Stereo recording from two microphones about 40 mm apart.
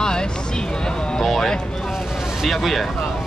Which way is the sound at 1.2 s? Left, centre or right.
Centre.